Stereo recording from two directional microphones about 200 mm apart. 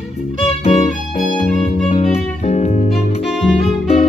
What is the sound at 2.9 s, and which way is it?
Music, centre (ahead or behind).